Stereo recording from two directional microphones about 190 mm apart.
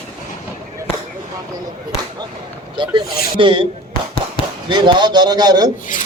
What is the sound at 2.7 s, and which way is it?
Speech, 25° right (ahead or behind).